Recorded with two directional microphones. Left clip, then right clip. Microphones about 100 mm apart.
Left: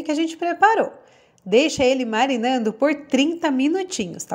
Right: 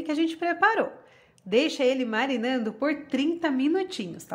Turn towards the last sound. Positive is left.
turn(degrees=45)  # may be behind; listen again after turning